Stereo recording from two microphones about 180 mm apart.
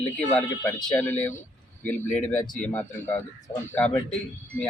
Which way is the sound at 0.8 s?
5° left (ahead or behind).